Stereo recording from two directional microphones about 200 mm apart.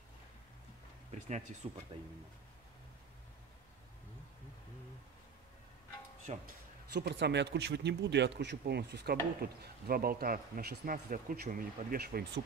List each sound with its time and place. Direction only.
1.6 s speech: 30° right (ahead or behind)
6.3 s a man's voice: 35° right (ahead or behind)
6.9 s speech: 55° right (ahead or behind)